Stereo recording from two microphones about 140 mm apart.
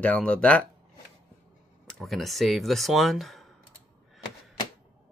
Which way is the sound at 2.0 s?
Centre (ahead or behind).